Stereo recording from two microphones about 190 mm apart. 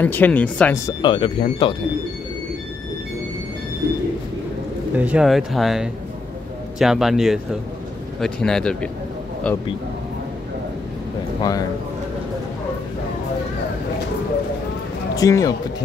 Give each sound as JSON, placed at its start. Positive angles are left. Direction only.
{"t": 0.0, "sound": "speech", "side_deg": 10}
{"t": 1.0, "sound": "speech", "side_deg": 25}
{"t": 4.9, "sound": "speech", "side_deg": -5}
{"t": 15.1, "sound": "speech", "side_deg": 20}